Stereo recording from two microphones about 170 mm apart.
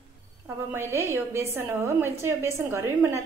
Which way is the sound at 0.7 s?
15° right (ahead or behind).